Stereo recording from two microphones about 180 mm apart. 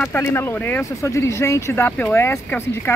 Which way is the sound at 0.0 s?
10° left (ahead or behind).